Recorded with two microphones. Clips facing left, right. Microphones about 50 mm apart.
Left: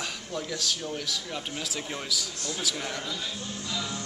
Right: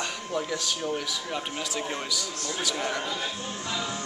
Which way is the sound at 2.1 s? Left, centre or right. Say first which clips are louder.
Right 1 dB; centre.